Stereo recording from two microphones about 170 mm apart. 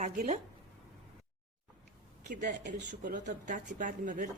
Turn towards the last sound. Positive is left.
turn(degrees=-50)  # may be behind; listen again after turning